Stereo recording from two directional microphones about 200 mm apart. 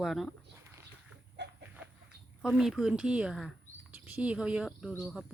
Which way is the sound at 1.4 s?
60° right (ahead or behind).